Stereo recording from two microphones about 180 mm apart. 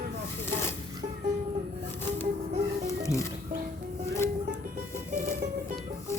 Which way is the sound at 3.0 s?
15° left (ahead or behind).